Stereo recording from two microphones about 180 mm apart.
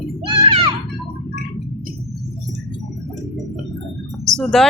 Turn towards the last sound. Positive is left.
turn(degrees=0)  # may be behind; listen again after turning